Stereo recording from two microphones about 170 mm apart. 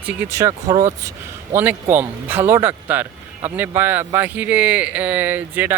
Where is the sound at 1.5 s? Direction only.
10° right (ahead or behind).